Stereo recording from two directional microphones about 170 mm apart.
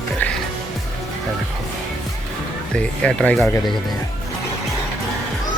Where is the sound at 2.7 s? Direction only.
5° left (ahead or behind).